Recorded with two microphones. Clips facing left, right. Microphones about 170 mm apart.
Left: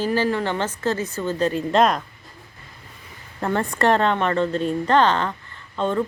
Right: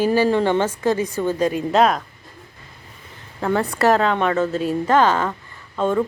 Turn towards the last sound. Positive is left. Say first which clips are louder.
# right 3 dB
turn(degrees=-5)  # may be behind; listen again after turning